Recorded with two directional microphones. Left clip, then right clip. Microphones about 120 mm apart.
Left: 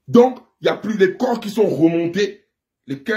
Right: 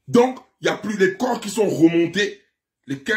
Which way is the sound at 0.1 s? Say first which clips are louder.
Left 4 dB; 20° right (ahead or behind).